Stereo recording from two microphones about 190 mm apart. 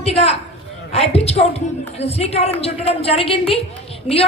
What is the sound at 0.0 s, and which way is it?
A woman's voice, 35° left (ahead or behind).